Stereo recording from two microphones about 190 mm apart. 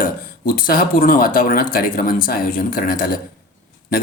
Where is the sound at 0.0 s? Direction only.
50° left (ahead or behind).